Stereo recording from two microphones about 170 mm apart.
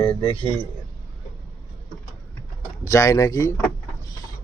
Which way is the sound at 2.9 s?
20° left (ahead or behind).